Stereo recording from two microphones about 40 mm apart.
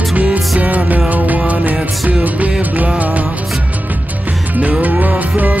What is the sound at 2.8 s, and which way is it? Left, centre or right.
Music, right.